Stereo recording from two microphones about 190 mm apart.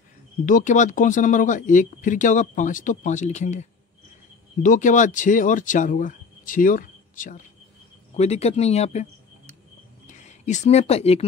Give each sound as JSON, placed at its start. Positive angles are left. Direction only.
{"t": 0.5, "sound": "speech", "side_deg": 40}
{"t": 4.6, "sound": "speech", "side_deg": 40}
{"t": 8.2, "sound": "speech", "side_deg": 35}
{"t": 10.0, "sound": "speech", "side_deg": 40}